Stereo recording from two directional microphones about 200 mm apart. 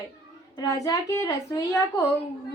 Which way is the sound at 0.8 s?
15° left (ahead or behind).